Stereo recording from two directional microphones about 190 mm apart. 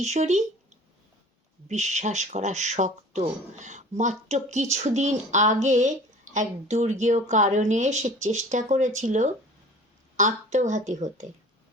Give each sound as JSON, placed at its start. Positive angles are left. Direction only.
{"t": 0.0, "sound": "a woman's voice", "side_deg": -35}
{"t": 1.6, "sound": "a woman's voice", "side_deg": -35}